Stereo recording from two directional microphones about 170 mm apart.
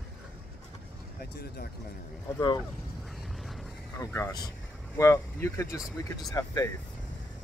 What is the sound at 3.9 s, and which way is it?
Speech, 15° left (ahead or behind).